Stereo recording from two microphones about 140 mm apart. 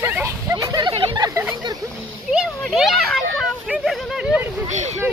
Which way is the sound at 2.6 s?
Centre (ahead or behind).